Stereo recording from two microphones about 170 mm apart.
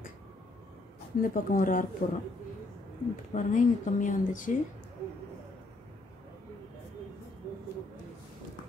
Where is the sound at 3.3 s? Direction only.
50° left (ahead or behind).